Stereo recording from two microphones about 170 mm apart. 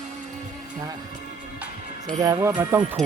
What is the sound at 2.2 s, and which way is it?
Speech, 20° right (ahead or behind).